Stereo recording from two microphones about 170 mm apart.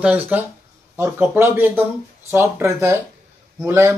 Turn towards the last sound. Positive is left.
turn(degrees=-15)  # may be behind; listen again after turning